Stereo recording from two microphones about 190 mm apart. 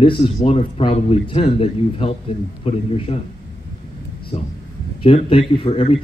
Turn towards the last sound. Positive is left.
turn(degrees=30)  # may be behind; listen again after turning